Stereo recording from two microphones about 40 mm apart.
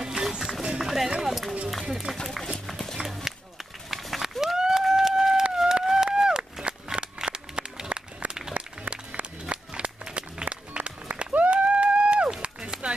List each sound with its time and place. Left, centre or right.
0.0 s run: centre
3.0 s run: right
3.9 s run: centre
6.1 s a sound: centre
12.4 s run: right